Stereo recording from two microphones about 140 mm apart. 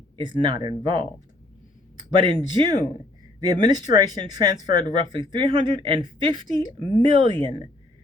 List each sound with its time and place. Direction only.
0.2 s speech: 35° right (ahead or behind)
2.1 s speech: 35° right (ahead or behind)